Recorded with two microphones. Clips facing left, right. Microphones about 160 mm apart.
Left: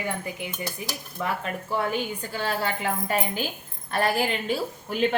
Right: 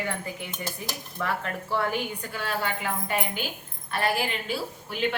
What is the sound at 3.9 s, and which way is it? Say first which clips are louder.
A woman's voice: left 3 dB; 40° left (ahead or behind).